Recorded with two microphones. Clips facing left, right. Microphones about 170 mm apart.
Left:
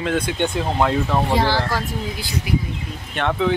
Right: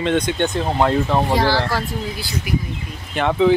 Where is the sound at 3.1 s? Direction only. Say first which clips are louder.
Right 4 dB; 5° right (ahead or behind).